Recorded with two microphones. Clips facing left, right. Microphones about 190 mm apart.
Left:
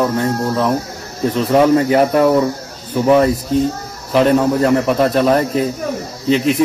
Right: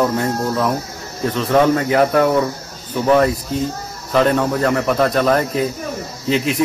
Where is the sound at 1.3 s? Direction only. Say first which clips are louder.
Left 2 dB; 5° left (ahead or behind).